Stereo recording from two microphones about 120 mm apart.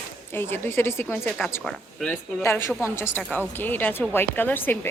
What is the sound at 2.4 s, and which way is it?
A woman's voice, 20° left (ahead or behind).